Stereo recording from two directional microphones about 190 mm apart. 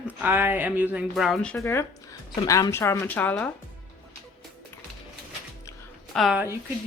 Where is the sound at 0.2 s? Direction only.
10° right (ahead or behind).